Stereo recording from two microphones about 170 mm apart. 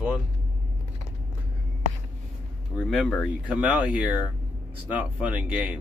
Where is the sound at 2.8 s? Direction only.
Centre (ahead or behind).